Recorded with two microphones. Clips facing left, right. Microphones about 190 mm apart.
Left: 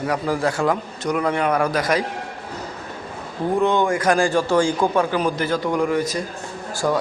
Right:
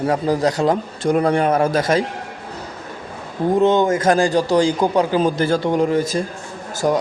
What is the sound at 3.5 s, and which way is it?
A man's voice, 20° right (ahead or behind).